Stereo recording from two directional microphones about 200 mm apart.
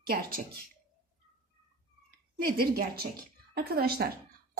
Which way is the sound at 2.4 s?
50° right (ahead or behind).